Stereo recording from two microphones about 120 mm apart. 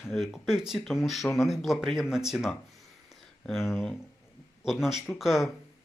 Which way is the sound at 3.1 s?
Centre (ahead or behind).